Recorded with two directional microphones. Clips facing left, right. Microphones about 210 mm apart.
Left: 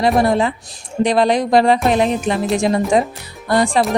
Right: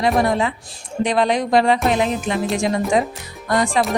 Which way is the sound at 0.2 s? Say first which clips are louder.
Left 3 dB; 35° left (ahead or behind).